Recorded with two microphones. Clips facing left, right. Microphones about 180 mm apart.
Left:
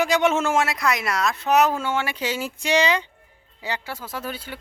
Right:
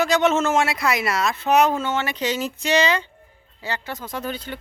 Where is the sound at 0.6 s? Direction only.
Centre (ahead or behind).